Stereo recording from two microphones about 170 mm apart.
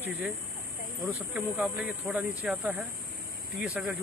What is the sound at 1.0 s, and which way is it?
Speech, 10° right (ahead or behind).